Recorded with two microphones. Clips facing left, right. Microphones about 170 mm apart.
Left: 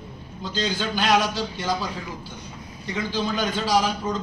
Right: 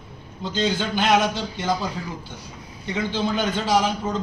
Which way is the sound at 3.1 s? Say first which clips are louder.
Right 1 dB; 20° right (ahead or behind).